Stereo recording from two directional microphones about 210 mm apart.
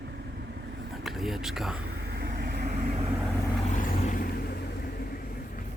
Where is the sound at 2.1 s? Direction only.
50° right (ahead or behind).